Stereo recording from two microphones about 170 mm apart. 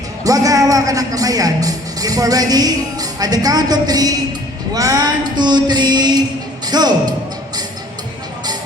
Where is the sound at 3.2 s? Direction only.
20° right (ahead or behind).